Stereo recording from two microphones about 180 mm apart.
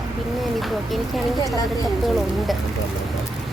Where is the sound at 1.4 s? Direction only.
20° left (ahead or behind).